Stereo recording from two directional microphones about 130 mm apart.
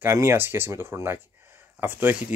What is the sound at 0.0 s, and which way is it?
Speech, 20° right (ahead or behind).